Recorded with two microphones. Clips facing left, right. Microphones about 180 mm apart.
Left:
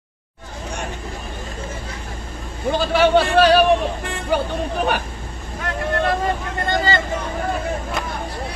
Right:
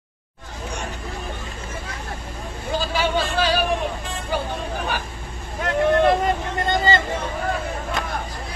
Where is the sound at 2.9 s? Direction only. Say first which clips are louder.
Left 10 dB; 65° left (ahead or behind).